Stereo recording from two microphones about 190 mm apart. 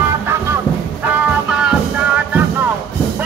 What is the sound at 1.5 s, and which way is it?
Music, 5° right (ahead or behind).